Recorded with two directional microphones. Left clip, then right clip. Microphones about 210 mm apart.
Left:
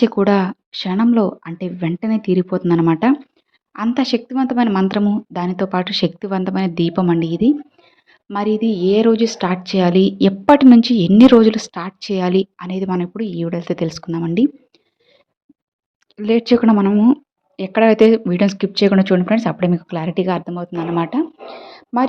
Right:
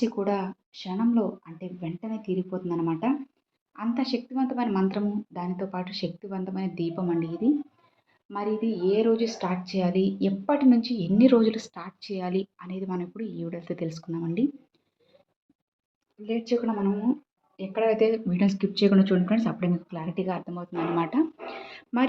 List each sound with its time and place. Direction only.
0.0 s speech: 50° left (ahead or behind)
16.1 s speech: 50° left (ahead or behind); by 22.0 s 25° left (ahead or behind)